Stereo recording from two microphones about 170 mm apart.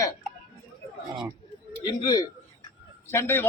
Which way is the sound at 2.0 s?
20° left (ahead or behind).